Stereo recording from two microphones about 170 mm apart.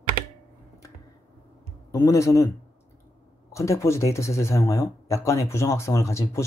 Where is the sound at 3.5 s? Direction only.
15° left (ahead or behind).